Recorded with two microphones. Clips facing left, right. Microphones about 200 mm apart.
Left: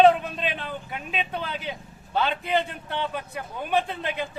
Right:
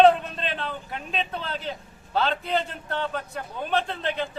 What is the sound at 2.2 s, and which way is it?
Speech, 5° left (ahead or behind).